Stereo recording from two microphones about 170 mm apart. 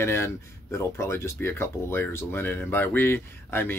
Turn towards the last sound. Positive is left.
turn(degrees=15)  # may be behind; listen again after turning